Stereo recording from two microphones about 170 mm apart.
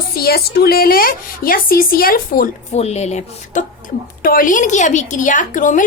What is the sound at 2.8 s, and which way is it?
Speech, 40° left (ahead or behind).